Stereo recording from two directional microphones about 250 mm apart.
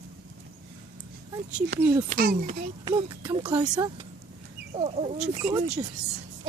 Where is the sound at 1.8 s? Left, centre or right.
Centre.